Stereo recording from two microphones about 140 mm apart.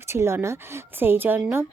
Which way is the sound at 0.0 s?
20° right (ahead or behind).